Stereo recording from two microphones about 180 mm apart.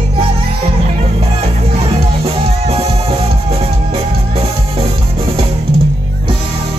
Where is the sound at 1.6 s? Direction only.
35° right (ahead or behind).